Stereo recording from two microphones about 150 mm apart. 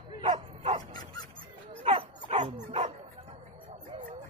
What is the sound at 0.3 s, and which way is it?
Bow-wow, 40° right (ahead or behind).